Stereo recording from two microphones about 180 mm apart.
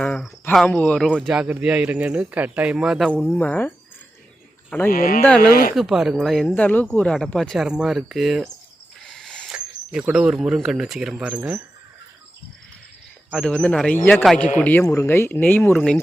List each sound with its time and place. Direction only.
0.0 s speech: 5° left (ahead or behind)
3.3 s speech: 10° left (ahead or behind)
4.9 s speech: 55° left (ahead or behind)
5.7 s speech: centre (ahead or behind)
9.0 s a sound: centre (ahead or behind)
13.3 s speech: 5° left (ahead or behind)